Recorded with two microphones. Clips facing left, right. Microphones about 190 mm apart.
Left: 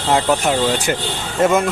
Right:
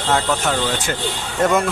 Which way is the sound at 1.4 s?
5° left (ahead or behind).